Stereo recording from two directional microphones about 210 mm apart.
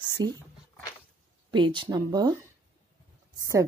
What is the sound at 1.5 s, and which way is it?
Speech, 20° right (ahead or behind).